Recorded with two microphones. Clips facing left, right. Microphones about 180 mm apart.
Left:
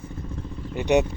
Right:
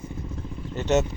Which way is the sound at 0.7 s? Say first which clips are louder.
Left 2 dB; 15° left (ahead or behind).